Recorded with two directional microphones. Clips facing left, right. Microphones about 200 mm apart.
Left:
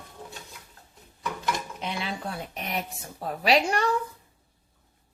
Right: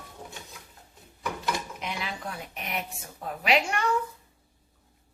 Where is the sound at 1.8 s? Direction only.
30° left (ahead or behind).